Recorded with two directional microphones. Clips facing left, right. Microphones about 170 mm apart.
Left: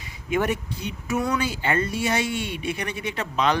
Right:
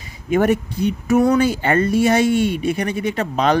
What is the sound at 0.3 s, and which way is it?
Speech, 45° right (ahead or behind).